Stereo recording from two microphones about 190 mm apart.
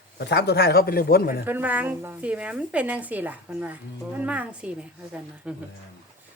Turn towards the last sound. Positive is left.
turn(degrees=-5)  # may be behind; listen again after turning